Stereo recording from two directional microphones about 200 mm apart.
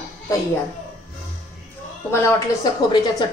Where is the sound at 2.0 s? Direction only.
15° left (ahead or behind).